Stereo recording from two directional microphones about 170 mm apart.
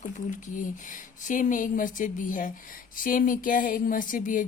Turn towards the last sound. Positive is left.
turn(degrees=50)  # may be behind; listen again after turning